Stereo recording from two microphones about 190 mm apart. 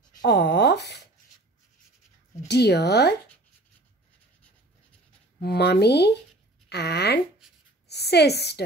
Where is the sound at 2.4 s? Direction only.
60° left (ahead or behind).